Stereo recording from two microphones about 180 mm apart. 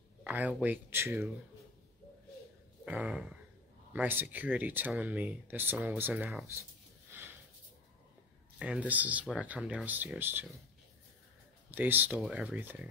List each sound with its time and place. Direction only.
0.2 s speech: 10° right (ahead or behind)
2.8 s speech: 5° right (ahead or behind)
7.1 s sniff: 10° right (ahead or behind)
8.5 s speech: 5° right (ahead or behind)
11.7 s speech: 10° right (ahead or behind)